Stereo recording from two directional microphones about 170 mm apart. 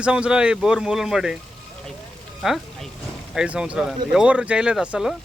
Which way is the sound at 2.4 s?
Centre (ahead or behind).